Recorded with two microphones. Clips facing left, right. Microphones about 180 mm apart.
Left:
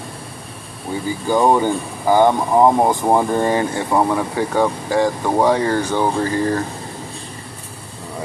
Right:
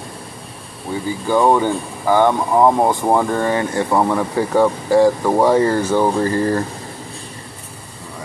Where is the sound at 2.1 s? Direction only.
15° left (ahead or behind).